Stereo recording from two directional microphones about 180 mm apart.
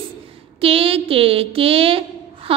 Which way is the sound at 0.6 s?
30° right (ahead or behind).